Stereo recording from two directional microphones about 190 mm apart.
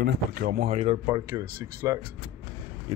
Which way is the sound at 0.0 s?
50° right (ahead or behind).